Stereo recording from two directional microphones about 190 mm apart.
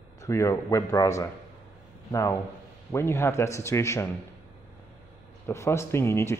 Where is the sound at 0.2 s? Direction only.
15° left (ahead or behind).